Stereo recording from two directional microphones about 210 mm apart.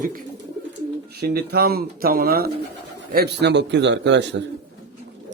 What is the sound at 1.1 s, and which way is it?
A man's voice, 50° right (ahead or behind).